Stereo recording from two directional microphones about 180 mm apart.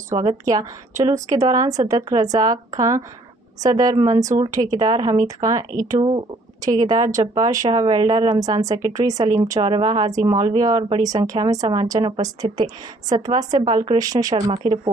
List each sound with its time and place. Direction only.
0.2 s speech: 20° right (ahead or behind)